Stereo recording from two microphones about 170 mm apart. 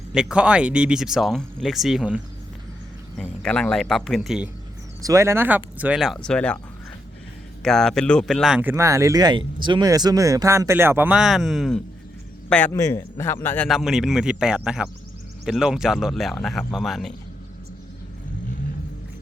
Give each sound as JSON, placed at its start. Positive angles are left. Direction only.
{"t": 0.1, "sound": "speech", "side_deg": -5}
{"t": 5.0, "sound": "speech", "side_deg": -15}
{"t": 7.6, "sound": "speech", "side_deg": 5}
{"t": 8.7, "sound": "a man's voice", "side_deg": -15}
{"t": 13.7, "sound": "speech", "side_deg": 0}